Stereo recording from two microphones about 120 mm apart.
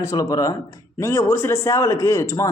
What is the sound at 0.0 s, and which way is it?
Speech, 30° left (ahead or behind).